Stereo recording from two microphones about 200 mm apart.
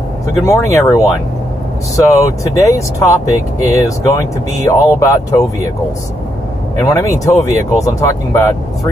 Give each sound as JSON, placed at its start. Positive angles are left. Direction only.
{"t": 0.5, "sound": "speech", "side_deg": 15}
{"t": 6.8, "sound": "speech", "side_deg": 15}